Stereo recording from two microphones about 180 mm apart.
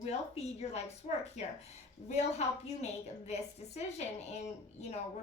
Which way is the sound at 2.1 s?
40° left (ahead or behind).